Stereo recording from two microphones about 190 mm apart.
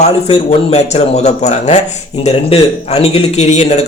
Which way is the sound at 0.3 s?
35° left (ahead or behind).